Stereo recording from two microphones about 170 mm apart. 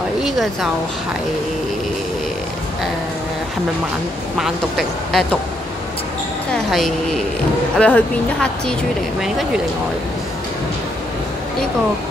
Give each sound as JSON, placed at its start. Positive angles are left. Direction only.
{"t": 0.2, "sound": "speech", "side_deg": 0}
{"t": 4.4, "sound": "speech", "side_deg": 0}
{"t": 6.5, "sound": "a sound", "side_deg": 0}
{"t": 7.7, "sound": "speech", "side_deg": 5}